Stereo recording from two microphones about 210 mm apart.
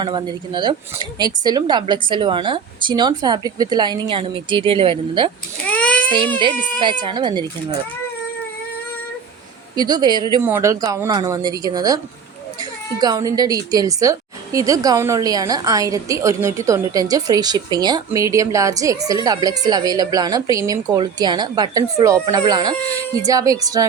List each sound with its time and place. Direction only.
0.0 s a woman's voice: 20° right (ahead or behind)
5.6 s baby cry: 5° left (ahead or behind)
6.7 s a woman's voice: 20° right (ahead or behind)
9.7 s a woman's voice: 20° right (ahead or behind)
13.0 s a woman's voice: 20° right (ahead or behind)